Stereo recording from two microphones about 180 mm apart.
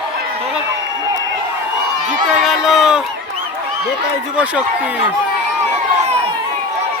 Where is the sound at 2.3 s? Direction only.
Centre (ahead or behind).